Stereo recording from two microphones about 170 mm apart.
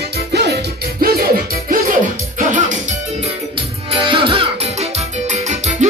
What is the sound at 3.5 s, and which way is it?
Music, 30° right (ahead or behind).